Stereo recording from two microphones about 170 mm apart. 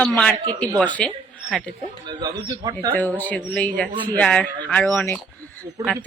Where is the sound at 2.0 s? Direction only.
25° right (ahead or behind).